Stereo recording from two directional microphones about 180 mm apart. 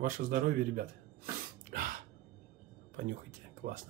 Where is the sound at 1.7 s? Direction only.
50° right (ahead or behind).